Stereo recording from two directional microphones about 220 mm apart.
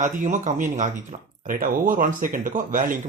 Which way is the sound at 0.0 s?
35° right (ahead or behind).